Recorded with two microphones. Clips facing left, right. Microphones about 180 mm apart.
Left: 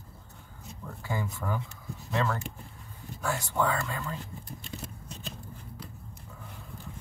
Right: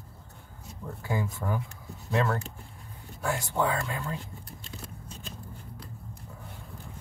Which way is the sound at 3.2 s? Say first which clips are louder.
Right 1 dB; 20° right (ahead or behind).